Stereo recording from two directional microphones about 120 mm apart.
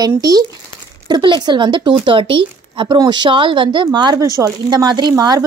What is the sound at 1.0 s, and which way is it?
A woman's voice, 40° right (ahead or behind).